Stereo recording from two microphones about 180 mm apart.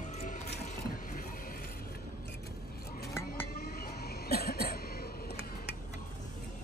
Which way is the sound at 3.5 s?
55° left (ahead or behind).